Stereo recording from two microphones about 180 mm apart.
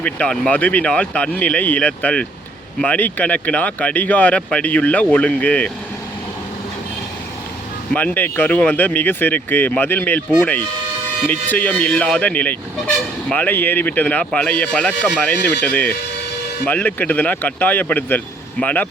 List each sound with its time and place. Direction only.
0.0 s speech: 5° left (ahead or behind)
7.9 s speech: 10° left (ahead or behind)